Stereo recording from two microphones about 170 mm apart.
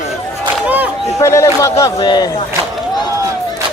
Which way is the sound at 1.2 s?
15° left (ahead or behind).